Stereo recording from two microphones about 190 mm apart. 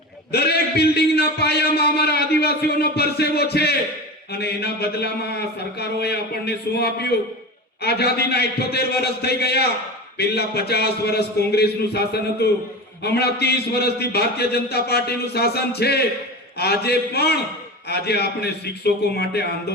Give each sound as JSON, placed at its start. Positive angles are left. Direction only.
{"t": 0.3, "sound": "a man's voice", "side_deg": 60}